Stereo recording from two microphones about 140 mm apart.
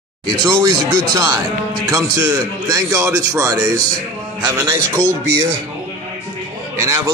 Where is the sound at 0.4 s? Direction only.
25° right (ahead or behind).